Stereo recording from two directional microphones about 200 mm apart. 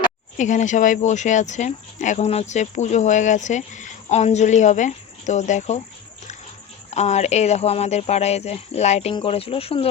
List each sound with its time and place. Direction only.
0.3 s speech: 35° left (ahead or behind)
6.9 s speech: 35° left (ahead or behind)